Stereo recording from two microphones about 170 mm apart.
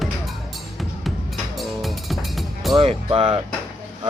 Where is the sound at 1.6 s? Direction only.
Centre (ahead or behind).